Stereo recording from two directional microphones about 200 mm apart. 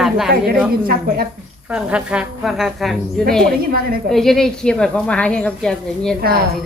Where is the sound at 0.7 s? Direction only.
45° right (ahead or behind).